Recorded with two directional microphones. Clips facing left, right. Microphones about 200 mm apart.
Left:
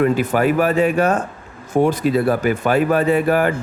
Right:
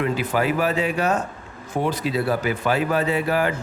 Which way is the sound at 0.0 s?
50° left (ahead or behind).